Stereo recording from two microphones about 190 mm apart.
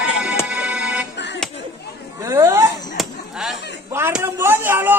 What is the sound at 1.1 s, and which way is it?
Music, 65° left (ahead or behind).